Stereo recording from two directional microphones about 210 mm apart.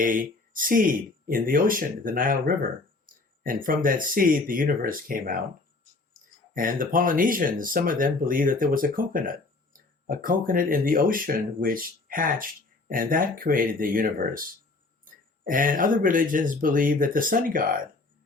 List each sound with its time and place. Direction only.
0.0 s speech: 40° right (ahead or behind)
3.1 s a sound: 40° right (ahead or behind)
3.4 s speech: 40° right (ahead or behind)
6.5 s speech: 40° right (ahead or behind)